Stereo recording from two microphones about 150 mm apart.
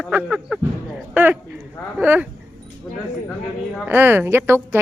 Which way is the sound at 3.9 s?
15° right (ahead or behind).